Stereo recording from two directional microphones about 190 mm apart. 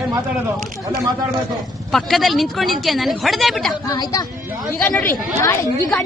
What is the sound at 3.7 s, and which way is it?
Speech, 20° left (ahead or behind).